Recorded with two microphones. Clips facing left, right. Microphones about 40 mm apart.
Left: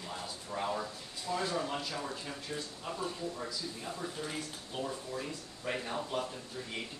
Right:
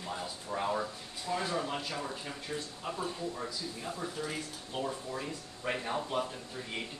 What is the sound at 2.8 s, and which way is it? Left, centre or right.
Speech, centre.